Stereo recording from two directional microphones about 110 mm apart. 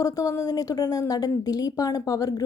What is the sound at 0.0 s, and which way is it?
A woman's voice, 35° left (ahead or behind).